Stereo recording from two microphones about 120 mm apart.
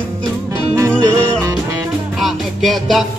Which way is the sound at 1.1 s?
25° right (ahead or behind).